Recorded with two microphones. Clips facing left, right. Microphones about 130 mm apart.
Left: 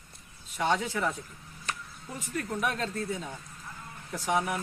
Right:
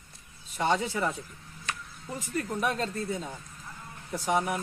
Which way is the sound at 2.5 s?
10° right (ahead or behind).